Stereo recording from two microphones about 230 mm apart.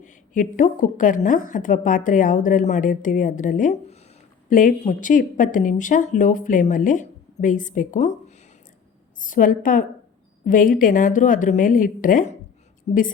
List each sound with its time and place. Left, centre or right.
0.0 s a woman's voice: left
9.2 s a woman's voice: left